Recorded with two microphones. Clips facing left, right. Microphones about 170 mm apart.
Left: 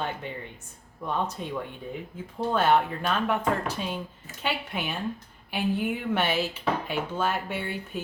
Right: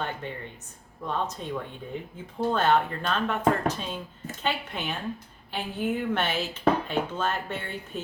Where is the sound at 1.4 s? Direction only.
10° left (ahead or behind).